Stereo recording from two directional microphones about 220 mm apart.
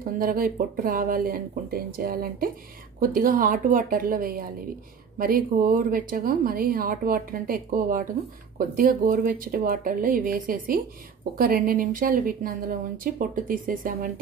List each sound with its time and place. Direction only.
0.0 s speech: 40° right (ahead or behind)